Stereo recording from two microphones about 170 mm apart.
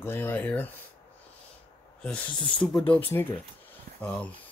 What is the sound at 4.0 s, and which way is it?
Speech, 10° left (ahead or behind).